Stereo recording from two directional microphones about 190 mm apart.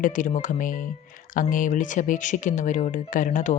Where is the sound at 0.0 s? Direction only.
40° left (ahead or behind).